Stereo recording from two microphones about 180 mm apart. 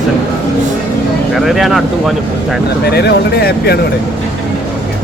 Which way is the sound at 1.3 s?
Centre (ahead or behind).